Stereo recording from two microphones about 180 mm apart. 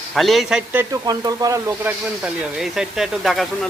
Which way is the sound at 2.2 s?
Centre (ahead or behind).